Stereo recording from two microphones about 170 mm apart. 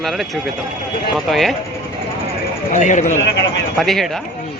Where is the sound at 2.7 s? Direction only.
45° left (ahead or behind).